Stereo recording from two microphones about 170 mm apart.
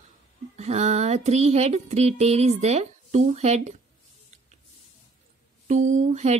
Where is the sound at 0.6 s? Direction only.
40° right (ahead or behind).